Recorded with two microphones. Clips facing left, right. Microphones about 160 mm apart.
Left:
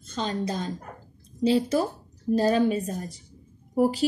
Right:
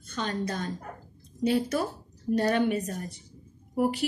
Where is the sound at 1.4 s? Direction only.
30° left (ahead or behind).